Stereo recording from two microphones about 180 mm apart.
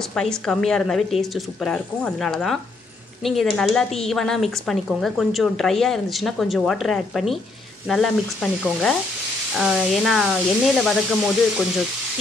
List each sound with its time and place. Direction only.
0.1 s speech: 5° left (ahead or behind)